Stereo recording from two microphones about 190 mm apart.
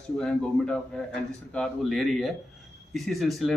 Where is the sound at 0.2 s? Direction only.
5° left (ahead or behind).